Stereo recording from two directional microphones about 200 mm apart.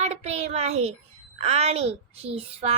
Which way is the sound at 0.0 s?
35° right (ahead or behind).